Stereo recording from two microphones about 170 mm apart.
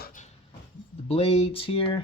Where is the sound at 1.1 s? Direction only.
40° left (ahead or behind).